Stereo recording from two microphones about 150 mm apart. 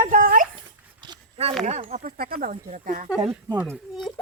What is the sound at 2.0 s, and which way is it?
Speech, 75° right (ahead or behind).